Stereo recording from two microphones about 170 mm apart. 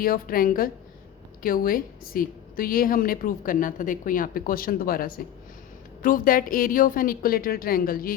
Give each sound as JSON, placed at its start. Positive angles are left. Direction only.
{"t": 0.0, "sound": "a woman's voice", "side_deg": 60}